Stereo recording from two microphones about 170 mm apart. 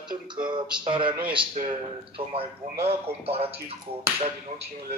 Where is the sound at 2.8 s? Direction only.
35° right (ahead or behind).